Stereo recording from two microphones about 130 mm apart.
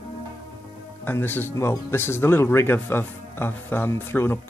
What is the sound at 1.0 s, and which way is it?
Speech, 15° left (ahead or behind).